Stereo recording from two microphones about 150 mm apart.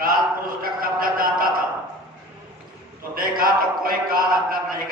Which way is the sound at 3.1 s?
75° right (ahead or behind).